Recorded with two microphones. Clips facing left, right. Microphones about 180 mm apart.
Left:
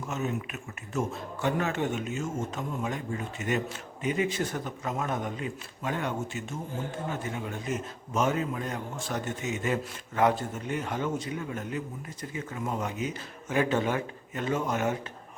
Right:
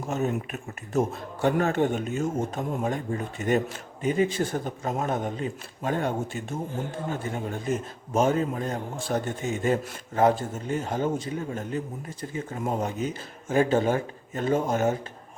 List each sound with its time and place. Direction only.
0.0 s a man's voice: 35° right (ahead or behind)
2.0 s a man's voice: 35° right (ahead or behind)